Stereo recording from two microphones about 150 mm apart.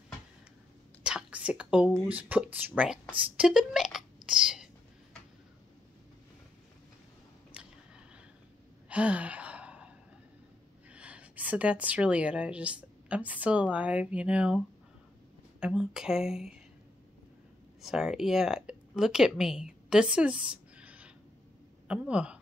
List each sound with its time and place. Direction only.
1.0 s whispering: 10° right (ahead or behind)
2.0 s speech: 10° right (ahead or behind)
8.8 s gasp: 10° right (ahead or behind)
10.9 s speech: 10° right (ahead or behind)
15.6 s speech: 5° right (ahead or behind)
17.8 s speech: 5° right (ahead or behind)